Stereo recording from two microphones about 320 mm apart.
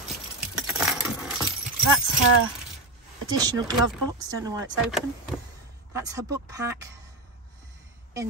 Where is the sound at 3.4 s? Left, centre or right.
Centre.